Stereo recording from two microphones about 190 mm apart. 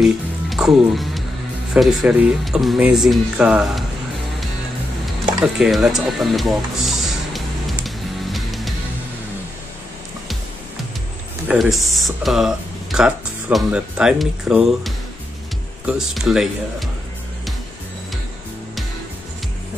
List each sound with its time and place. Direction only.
0.0 s music: centre (ahead or behind)
1.7 s speech: centre (ahead or behind)
5.4 s speech: 5° right (ahead or behind)
7.8 s music: centre (ahead or behind)
11.4 s speech: centre (ahead or behind)